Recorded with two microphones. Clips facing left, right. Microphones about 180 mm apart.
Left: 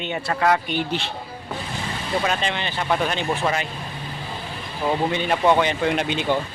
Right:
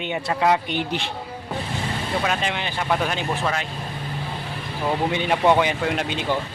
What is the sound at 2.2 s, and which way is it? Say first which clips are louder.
Speech: even; 10° right (ahead or behind).